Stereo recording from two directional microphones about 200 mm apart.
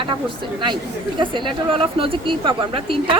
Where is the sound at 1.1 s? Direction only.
25° right (ahead or behind).